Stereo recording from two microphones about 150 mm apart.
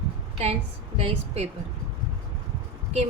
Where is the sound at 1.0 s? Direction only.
45° right (ahead or behind).